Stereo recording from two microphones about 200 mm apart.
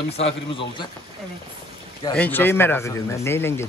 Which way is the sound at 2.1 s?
10° left (ahead or behind).